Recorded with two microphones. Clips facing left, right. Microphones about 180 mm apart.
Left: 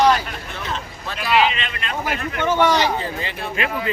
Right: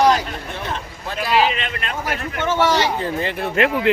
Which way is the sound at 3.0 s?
55° right (ahead or behind).